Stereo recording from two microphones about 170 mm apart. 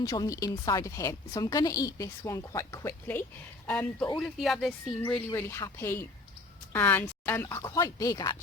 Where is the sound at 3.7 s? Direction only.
5° left (ahead or behind).